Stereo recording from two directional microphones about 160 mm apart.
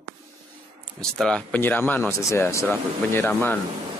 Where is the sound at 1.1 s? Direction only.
5° left (ahead or behind).